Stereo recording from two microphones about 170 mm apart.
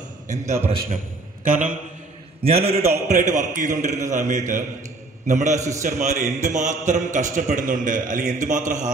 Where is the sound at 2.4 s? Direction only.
35° right (ahead or behind).